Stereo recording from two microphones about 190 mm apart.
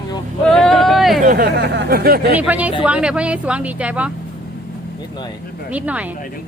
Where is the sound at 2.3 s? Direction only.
10° right (ahead or behind).